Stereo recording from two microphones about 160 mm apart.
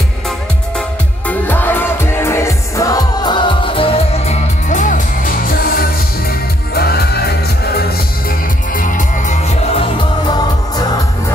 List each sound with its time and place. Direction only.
0.7 s music: 10° left (ahead or behind); by 5.9 s 65° left (ahead or behind)
6.7 s music: 80° left
8.7 s music: 55° left (ahead or behind)